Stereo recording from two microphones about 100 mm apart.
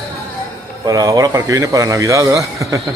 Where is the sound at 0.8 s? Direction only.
40° right (ahead or behind).